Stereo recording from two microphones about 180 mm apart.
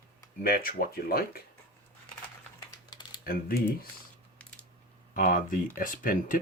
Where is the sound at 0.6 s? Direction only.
55° left (ahead or behind).